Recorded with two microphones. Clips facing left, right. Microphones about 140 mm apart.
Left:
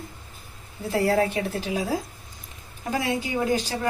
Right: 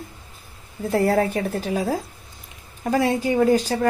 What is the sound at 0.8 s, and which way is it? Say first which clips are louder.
A woman's voice: right 3 dB; 35° right (ahead or behind).